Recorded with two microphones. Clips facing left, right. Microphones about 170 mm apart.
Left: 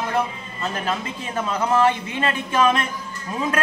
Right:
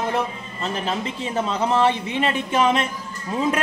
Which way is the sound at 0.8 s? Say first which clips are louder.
Right 1 dB; 25° right (ahead or behind).